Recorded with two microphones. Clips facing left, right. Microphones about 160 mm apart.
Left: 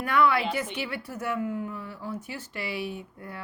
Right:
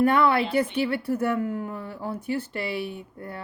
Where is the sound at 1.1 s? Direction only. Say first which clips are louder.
Right 1 dB; 55° right (ahead or behind).